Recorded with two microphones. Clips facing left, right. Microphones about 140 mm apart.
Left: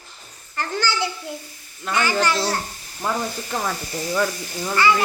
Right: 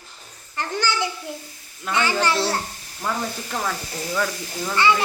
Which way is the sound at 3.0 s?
10° left (ahead or behind).